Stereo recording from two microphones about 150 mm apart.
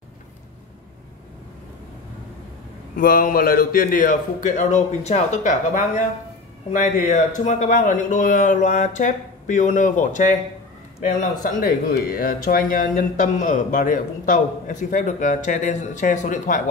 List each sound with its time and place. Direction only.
3.0 s speech: 75° left (ahead or behind); by 10.3 s 55° left (ahead or behind)
11.4 s speech: 75° left (ahead or behind); by 16.6 s 60° left (ahead or behind)